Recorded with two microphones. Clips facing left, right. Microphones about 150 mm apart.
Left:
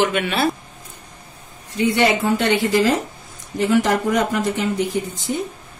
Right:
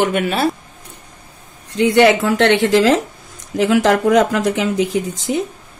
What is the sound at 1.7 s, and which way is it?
Speech, 90° right.